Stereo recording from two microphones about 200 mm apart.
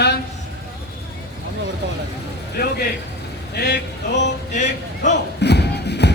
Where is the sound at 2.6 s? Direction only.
50° left (ahead or behind).